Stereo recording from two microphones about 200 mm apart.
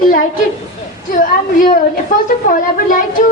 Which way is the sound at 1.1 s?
40° left (ahead or behind).